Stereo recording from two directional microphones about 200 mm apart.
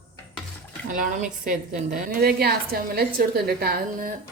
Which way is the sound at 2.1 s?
50° right (ahead or behind).